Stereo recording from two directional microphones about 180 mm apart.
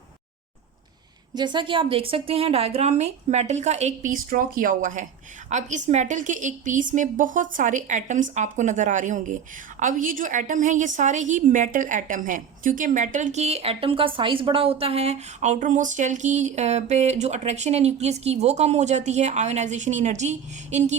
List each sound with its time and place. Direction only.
1.3 s a woman's voice: 25° right (ahead or behind); by 20.9 s 40° right (ahead or behind)